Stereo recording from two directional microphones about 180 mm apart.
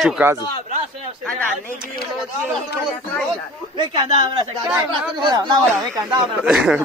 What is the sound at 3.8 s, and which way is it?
A man's voice, 25° right (ahead or behind).